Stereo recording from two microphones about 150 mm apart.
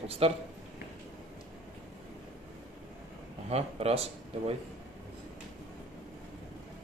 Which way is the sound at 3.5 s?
40° right (ahead or behind).